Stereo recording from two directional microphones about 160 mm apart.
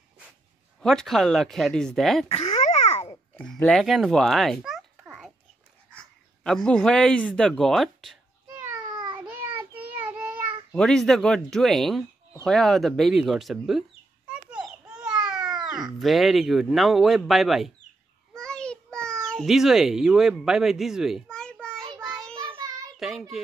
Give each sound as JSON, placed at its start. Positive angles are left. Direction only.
{"t": 0.7, "sound": "speech", "side_deg": 5}
{"t": 2.2, "sound": "a sound", "side_deg": 40}
{"t": 3.3, "sound": "a child's voice", "side_deg": 5}
{"t": 8.9, "sound": "a sound", "side_deg": -30}
{"t": 9.2, "sound": "child singing", "side_deg": -10}
{"t": 10.7, "sound": "speech", "side_deg": 5}
{"t": 12.4, "sound": "chicken", "side_deg": 0}
{"t": 15.1, "sound": "cat", "side_deg": -5}
{"t": 15.8, "sound": "speech", "side_deg": 0}
{"t": 18.3, "sound": "child singing", "side_deg": 5}
{"t": 19.2, "sound": "speech", "side_deg": 0}
{"t": 22.4, "sound": "child singing", "side_deg": -25}
{"t": 22.9, "sound": "child singing", "side_deg": 0}